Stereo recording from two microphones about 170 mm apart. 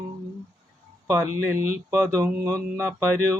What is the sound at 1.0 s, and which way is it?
Speech, 15° right (ahead or behind).